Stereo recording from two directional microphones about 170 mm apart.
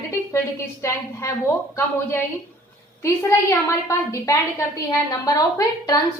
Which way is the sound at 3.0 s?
15° left (ahead or behind).